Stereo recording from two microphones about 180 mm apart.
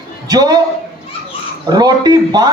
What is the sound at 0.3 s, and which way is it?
Speech, 20° right (ahead or behind).